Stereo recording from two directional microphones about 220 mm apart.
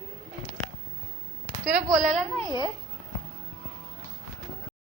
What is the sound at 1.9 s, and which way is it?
Speech, 30° right (ahead or behind).